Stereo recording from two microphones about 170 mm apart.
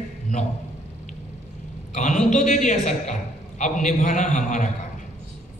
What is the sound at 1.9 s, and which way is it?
A man's voice, 45° left (ahead or behind).